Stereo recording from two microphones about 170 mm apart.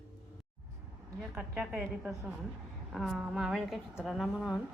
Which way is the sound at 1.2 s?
5° right (ahead or behind).